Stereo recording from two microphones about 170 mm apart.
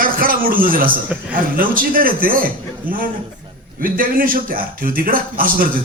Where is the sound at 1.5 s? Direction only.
55° right (ahead or behind).